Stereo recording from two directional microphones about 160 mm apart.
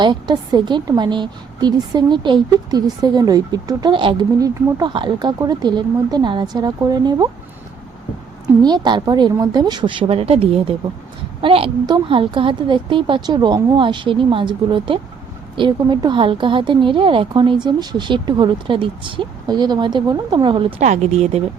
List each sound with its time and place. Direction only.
0.0 s a woman's voice: 30° right (ahead or behind)
8.6 s a woman's voice: 25° right (ahead or behind)
20.8 s speech: 45° right (ahead or behind)